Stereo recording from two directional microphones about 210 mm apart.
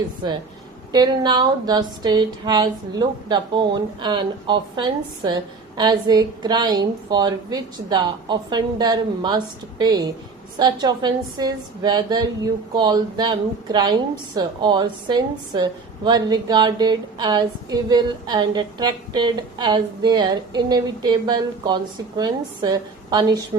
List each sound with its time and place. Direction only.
0.9 s a woman's voice: 20° right (ahead or behind)